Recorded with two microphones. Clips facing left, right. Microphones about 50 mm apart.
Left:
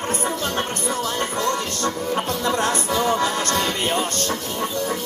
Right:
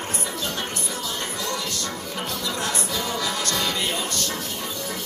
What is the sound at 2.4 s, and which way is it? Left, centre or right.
Music, left.